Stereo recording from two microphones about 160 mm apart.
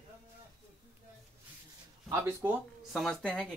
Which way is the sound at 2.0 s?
15° right (ahead or behind).